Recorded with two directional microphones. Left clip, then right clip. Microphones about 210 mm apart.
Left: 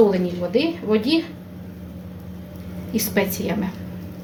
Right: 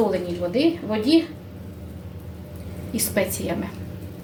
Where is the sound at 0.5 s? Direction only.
25° left (ahead or behind).